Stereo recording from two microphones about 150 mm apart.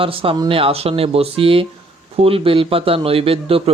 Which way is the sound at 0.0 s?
35° right (ahead or behind).